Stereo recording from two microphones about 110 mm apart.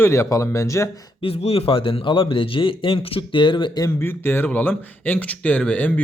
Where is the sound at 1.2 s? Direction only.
60° left (ahead or behind).